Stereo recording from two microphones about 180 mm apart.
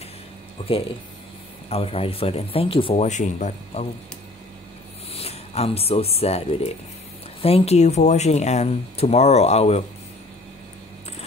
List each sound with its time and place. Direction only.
1.7 s speech: 35° left (ahead or behind)
5.1 s speech: 35° left (ahead or behind)